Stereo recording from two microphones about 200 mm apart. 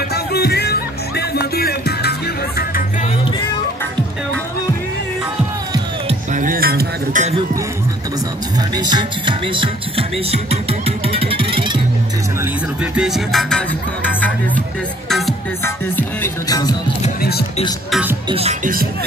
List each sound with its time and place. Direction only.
0.1 s music: 55° left (ahead or behind)
6.0 s music: 40° right (ahead or behind)
8.5 s music: 20° right (ahead or behind)
12.9 s music: centre (ahead or behind)
15.6 s music: 10° left (ahead or behind)
18.3 s music: 30° right (ahead or behind)